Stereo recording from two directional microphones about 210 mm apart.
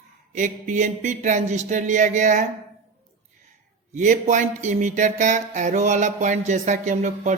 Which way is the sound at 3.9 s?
35° right (ahead or behind).